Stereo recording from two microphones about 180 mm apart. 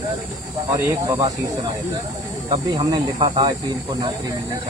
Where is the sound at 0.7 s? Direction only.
15° right (ahead or behind).